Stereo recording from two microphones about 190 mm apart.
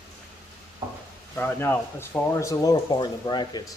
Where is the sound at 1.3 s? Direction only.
10° left (ahead or behind).